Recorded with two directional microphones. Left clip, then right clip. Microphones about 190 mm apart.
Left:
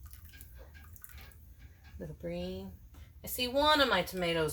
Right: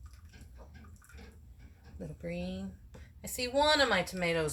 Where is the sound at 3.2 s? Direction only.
15° left (ahead or behind).